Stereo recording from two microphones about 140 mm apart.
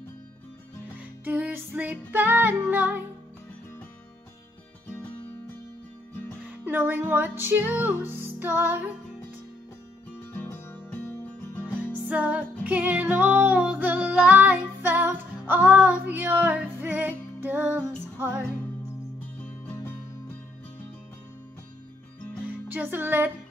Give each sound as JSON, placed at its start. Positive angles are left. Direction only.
{"t": 0.9, "sound": "music", "side_deg": -10}
{"t": 6.4, "sound": "music", "side_deg": -10}
{"t": 10.3, "sound": "music", "side_deg": 15}
{"t": 11.6, "sound": "music", "side_deg": -10}
{"t": 22.7, "sound": "music", "side_deg": -15}